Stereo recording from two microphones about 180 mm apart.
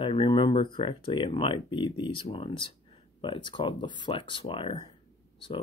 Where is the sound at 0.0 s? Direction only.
25° left (ahead or behind).